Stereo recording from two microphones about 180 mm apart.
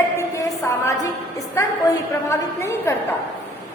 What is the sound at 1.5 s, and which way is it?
A woman's voice, 15° left (ahead or behind).